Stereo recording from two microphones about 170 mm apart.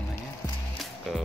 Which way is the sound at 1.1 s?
Centre (ahead or behind).